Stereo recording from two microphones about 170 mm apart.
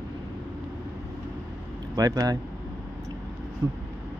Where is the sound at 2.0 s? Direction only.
20° right (ahead or behind).